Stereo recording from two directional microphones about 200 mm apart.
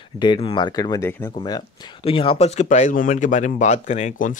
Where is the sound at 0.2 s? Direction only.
25° left (ahead or behind).